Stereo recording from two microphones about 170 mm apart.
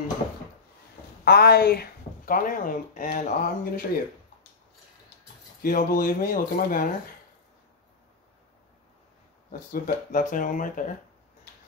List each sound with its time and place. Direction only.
1.2 s speech: 70° left (ahead or behind); by 3.8 s 50° left (ahead or behind)
5.6 s speech: 55° left (ahead or behind)
9.5 s speech: 55° left (ahead or behind)